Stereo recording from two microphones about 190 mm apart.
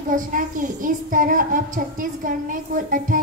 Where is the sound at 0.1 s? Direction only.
45° right (ahead or behind).